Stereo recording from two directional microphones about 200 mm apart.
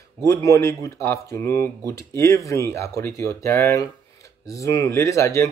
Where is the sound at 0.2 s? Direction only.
15° left (ahead or behind).